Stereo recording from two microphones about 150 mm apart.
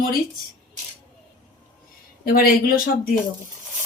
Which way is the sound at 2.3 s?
70° left (ahead or behind).